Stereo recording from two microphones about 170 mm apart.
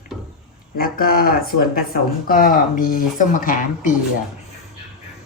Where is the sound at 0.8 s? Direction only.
60° left (ahead or behind).